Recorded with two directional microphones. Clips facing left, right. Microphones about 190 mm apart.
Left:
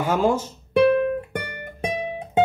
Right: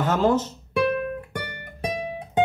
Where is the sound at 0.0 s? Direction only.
10° left (ahead or behind).